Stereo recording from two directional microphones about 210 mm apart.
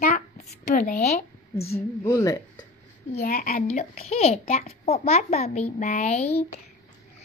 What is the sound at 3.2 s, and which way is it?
A child's voice, 40° left (ahead or behind).